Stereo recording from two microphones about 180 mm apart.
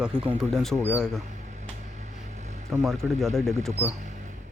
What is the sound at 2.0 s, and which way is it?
Vehicle, 40° right (ahead or behind).